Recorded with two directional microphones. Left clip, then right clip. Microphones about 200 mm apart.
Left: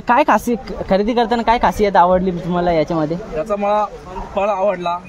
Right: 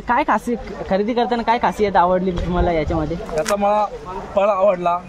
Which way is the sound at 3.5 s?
10° right (ahead or behind).